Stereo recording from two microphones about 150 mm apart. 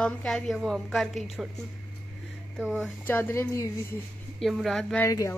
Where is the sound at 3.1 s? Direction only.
15° left (ahead or behind).